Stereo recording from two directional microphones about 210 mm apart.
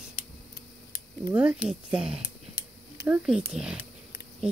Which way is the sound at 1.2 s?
5° right (ahead or behind).